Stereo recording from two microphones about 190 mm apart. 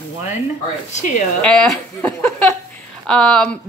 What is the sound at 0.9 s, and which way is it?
Speech, 40° left (ahead or behind).